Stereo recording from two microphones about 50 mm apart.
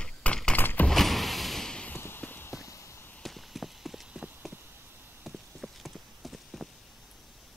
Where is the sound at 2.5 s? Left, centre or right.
Left.